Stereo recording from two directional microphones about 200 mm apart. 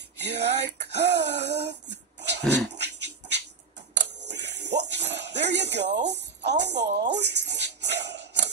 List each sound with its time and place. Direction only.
0.2 s throat clearing: 60° right (ahead or behind)
1.9 s dog: 60° right (ahead or behind)
4.0 s a sound: 60° right (ahead or behind)
5.9 s music: 60° right (ahead or behind)